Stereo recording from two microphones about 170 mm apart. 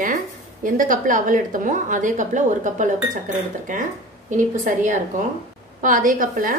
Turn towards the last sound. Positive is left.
turn(degrees=-55)  # may be behind; listen again after turning